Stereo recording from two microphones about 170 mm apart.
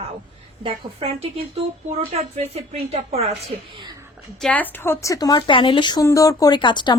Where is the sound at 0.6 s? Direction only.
35° right (ahead or behind).